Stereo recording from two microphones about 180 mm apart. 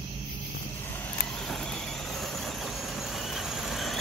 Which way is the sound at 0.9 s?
5° left (ahead or behind).